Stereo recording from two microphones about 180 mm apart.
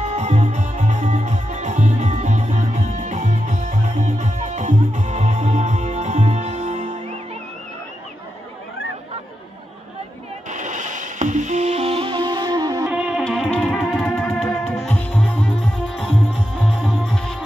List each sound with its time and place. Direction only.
0.1 s music: 40° right (ahead or behind)
10.5 s music: 45° right (ahead or behind); by 12.8 s 20° right (ahead or behind)
12.9 s music: 5° right (ahead or behind)